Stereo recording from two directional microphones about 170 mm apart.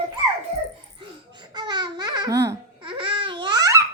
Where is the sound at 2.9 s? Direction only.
30° right (ahead or behind).